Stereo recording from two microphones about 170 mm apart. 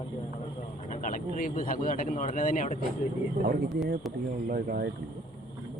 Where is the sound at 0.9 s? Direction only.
50° left (ahead or behind).